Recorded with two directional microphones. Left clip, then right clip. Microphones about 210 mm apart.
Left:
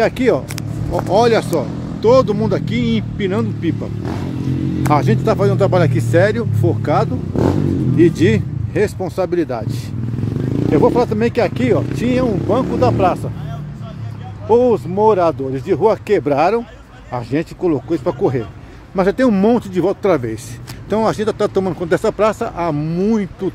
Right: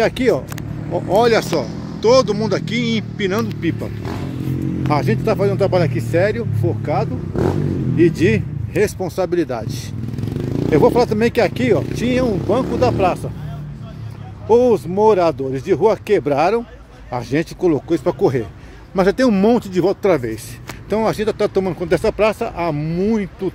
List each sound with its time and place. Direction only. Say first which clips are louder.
0.0 s speech: left 1 dB; 5° right (ahead or behind); by 7.1 s 15° left (ahead or behind)
8.0 s speech: left 1 dB; centre (ahead or behind)
10.7 s speech: even; 15° right (ahead or behind)
14.5 s speech: even; 15° right (ahead or behind)
17.1 s speech: even; 15° right (ahead or behind)